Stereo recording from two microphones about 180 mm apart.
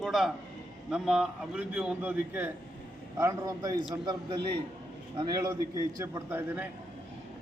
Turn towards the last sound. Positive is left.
turn(degrees=-15)  # may be behind; listen again after turning